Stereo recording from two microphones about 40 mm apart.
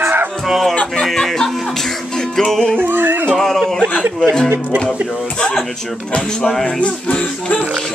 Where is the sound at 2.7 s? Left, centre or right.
Right.